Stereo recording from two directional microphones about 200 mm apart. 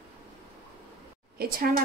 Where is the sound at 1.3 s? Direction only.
50° right (ahead or behind).